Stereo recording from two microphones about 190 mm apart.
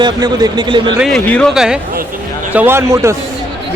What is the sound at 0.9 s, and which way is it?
A man's voice, centre (ahead or behind).